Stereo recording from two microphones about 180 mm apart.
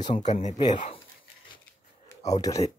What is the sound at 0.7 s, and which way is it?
Speech, 30° left (ahead or behind).